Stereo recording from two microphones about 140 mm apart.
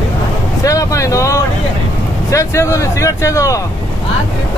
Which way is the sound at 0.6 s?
25° left (ahead or behind).